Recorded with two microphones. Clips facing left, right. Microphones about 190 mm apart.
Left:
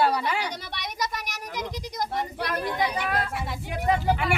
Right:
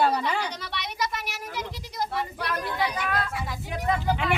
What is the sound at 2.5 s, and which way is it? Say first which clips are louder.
Speech: left 2 dB; 15° left (ahead or behind).